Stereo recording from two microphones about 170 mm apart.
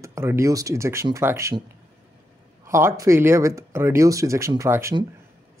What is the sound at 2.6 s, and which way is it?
Speech, 15° right (ahead or behind).